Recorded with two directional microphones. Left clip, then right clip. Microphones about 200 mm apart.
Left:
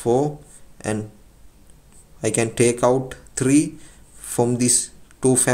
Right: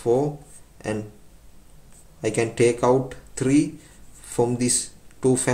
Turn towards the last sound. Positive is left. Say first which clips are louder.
# left 2 dB
turn(degrees=30)  # may be behind; listen again after turning